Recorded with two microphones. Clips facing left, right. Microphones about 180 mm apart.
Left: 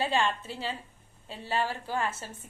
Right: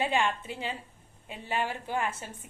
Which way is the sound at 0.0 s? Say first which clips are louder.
Even; 15° right (ahead or behind).